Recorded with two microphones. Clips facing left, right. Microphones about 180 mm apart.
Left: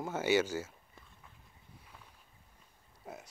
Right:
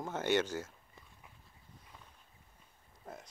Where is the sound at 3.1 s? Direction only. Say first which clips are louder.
Left 1 dB; 10° left (ahead or behind).